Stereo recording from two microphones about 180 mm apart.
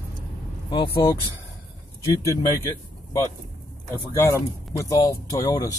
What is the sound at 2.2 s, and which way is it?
Speech, 15° left (ahead or behind).